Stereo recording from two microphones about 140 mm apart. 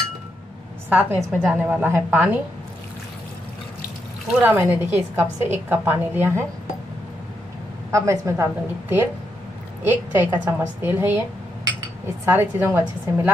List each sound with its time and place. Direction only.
0.8 s a woman's voice: 10° right (ahead or behind)
4.4 s a woman's voice: 10° right (ahead or behind)
7.9 s a woman's voice: 20° right (ahead or behind)
9.8 s a woman's voice: 15° right (ahead or behind)
12.3 s a woman's voice: 15° right (ahead or behind)